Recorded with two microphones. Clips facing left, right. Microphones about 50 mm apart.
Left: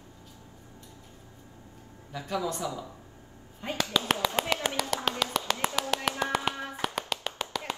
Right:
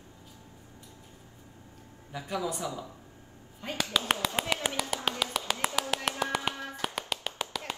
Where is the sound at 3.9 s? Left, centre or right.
Centre.